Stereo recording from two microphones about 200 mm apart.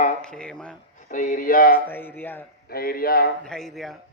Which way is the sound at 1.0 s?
40° left (ahead or behind).